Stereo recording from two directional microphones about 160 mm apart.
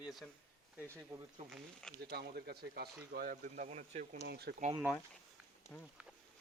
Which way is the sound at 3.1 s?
60° right (ahead or behind).